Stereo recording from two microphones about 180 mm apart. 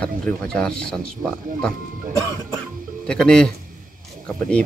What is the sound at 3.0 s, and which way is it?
Speech, 5° left (ahead or behind).